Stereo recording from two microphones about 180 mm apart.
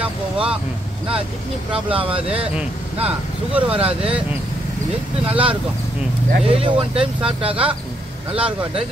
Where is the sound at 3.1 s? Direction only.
5° right (ahead or behind).